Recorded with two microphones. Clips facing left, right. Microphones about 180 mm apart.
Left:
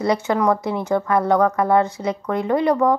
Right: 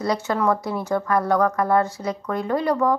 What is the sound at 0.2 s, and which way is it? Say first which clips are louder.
Speech: left 3 dB; 15° left (ahead or behind).